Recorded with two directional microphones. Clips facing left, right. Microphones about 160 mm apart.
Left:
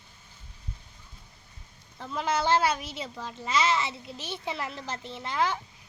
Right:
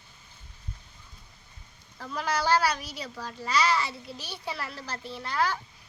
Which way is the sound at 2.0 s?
20° left (ahead or behind).